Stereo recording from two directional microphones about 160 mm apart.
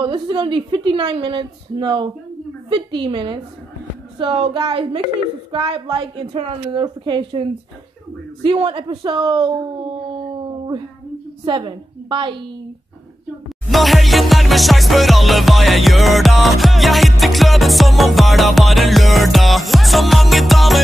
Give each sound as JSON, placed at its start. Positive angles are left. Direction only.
{"t": 0.0, "sound": "a woman's voice", "side_deg": -30}
{"t": 11.4, "sound": "a woman's voice", "side_deg": -30}
{"t": 13.7, "sound": "music", "side_deg": 0}